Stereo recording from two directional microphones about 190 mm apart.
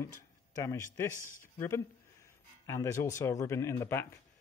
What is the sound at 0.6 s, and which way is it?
Speech, 15° left (ahead or behind).